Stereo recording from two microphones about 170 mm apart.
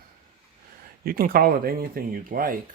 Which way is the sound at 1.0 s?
60° right (ahead or behind).